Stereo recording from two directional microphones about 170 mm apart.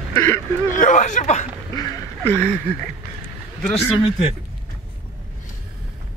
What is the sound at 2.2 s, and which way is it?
Speech, 10° left (ahead or behind).